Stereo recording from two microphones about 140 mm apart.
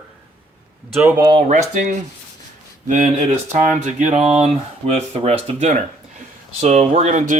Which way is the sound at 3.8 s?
60° right (ahead or behind).